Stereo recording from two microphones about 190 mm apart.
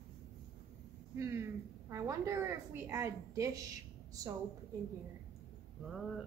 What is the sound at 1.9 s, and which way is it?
A woman's voice, 15° right (ahead or behind).